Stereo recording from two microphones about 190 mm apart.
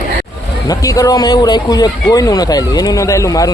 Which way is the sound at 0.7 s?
20° left (ahead or behind).